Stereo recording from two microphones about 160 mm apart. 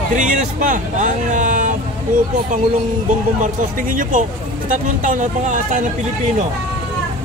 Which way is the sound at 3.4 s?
55° right (ahead or behind).